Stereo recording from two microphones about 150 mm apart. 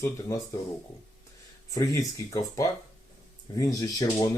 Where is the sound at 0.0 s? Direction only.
20° left (ahead or behind).